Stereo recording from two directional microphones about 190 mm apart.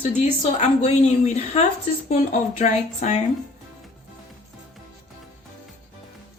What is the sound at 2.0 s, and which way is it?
A woman's voice, 40° left (ahead or behind).